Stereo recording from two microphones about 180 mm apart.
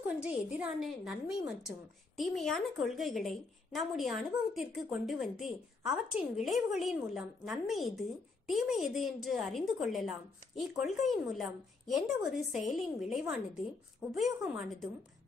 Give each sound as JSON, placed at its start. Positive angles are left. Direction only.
{"t": 0.2, "sound": "a woman's voice", "side_deg": -5}